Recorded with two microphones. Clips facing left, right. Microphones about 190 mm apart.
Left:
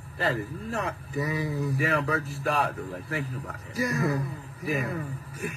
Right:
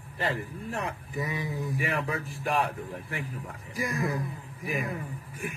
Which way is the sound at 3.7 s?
40° left (ahead or behind).